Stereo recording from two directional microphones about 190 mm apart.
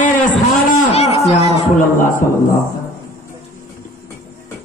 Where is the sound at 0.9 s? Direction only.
35° left (ahead or behind).